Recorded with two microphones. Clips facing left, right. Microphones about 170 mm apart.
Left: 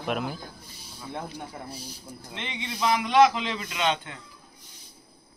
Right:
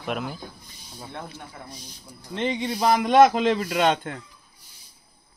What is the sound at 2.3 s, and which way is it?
A man's voice, 40° right (ahead or behind).